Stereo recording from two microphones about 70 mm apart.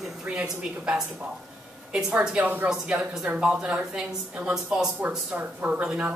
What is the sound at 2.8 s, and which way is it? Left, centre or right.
A woman's voice, centre.